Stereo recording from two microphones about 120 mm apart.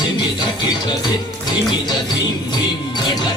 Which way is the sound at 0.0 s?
35° left (ahead or behind).